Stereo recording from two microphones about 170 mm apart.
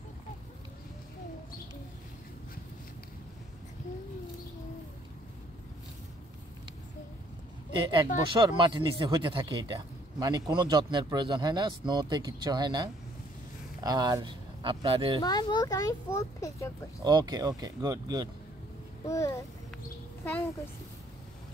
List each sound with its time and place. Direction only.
7.8 s speech: 30° right (ahead or behind)
15.2 s a child's voice: 25° left (ahead or behind)
17.0 s speech: 25° right (ahead or behind)
19.0 s a child's voice: 15° left (ahead or behind)